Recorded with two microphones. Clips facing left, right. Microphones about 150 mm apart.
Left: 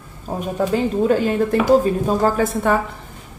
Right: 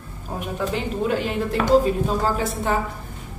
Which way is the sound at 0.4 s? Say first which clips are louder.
Left 7 dB; 40° left (ahead or behind).